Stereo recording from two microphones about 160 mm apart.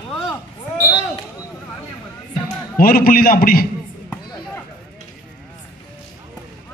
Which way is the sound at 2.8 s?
65° left (ahead or behind).